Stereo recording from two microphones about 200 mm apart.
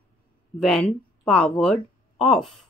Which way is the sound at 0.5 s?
5° left (ahead or behind).